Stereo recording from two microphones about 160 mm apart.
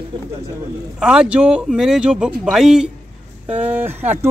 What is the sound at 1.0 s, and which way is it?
A man's voice, 5° right (ahead or behind).